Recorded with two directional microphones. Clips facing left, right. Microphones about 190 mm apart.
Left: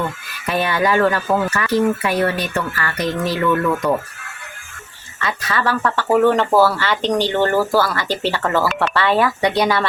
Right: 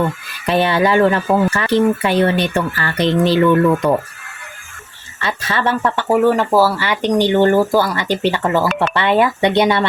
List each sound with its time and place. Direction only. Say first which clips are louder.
0.4 s speech: right 4 dB; 25° right (ahead or behind)
5.2 s speech: right 2 dB; 30° right (ahead or behind)
6.1 s speech: right 1 dB; 10° right (ahead or behind)